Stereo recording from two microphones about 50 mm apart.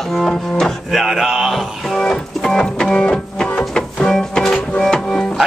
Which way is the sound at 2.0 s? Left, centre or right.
Centre.